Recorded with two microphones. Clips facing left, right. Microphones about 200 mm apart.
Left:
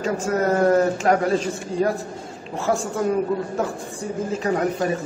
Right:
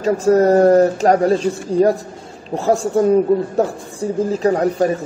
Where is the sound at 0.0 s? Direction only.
35° right (ahead or behind).